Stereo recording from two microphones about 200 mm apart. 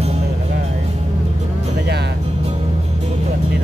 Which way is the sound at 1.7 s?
55° right (ahead or behind).